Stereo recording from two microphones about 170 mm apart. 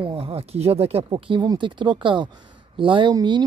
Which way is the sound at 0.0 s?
35° right (ahead or behind).